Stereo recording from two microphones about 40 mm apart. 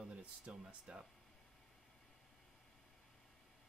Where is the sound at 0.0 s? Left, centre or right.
Right.